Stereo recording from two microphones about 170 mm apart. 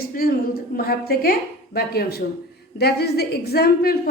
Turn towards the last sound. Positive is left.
turn(degrees=65)  # may be behind; listen again after turning